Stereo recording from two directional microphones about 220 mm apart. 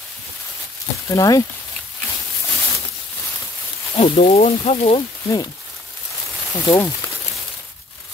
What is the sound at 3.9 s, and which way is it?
Speech, 30° left (ahead or behind).